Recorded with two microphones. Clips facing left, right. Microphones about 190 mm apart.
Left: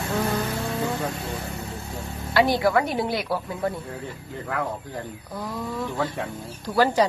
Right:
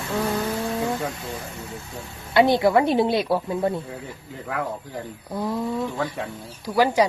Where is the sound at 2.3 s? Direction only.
20° right (ahead or behind).